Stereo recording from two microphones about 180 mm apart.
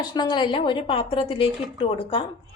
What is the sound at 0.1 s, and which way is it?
A woman's voice, 25° left (ahead or behind).